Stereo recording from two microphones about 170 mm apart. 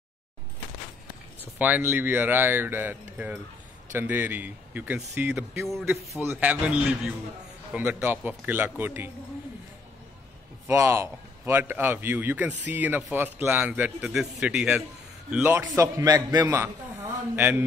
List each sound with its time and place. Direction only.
1.6 s a man's voice: 10° right (ahead or behind)
5.7 s a man's voice: centre (ahead or behind)
10.7 s a man's voice: 15° right (ahead or behind)